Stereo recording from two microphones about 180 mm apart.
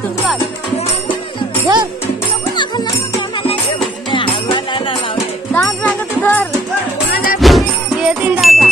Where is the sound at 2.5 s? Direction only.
20° left (ahead or behind).